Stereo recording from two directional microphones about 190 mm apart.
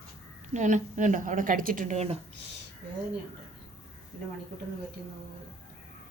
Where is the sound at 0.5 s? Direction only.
40° right (ahead or behind).